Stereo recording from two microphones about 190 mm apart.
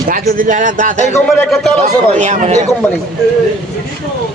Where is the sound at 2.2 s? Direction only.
40° right (ahead or behind).